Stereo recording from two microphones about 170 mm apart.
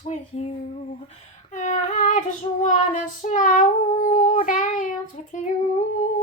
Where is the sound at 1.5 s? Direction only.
45° left (ahead or behind).